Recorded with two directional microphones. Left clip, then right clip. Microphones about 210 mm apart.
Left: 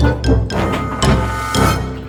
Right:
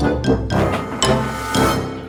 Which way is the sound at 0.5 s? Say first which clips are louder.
Left 1 dB; centre (ahead or behind).